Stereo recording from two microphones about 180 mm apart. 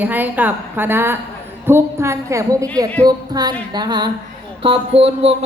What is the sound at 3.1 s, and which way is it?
Music, 20° right (ahead or behind).